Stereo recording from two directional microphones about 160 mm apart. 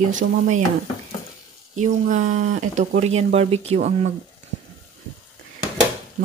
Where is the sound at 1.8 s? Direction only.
50° right (ahead or behind).